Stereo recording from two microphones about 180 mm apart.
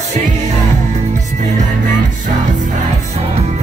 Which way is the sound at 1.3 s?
45° right (ahead or behind).